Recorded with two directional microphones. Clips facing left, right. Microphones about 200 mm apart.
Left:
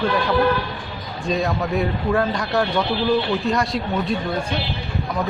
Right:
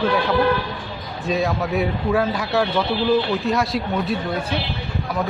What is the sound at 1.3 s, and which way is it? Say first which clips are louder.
Speech: even; centre (ahead or behind).